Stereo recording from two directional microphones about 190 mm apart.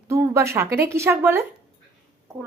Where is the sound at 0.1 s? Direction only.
15° right (ahead or behind).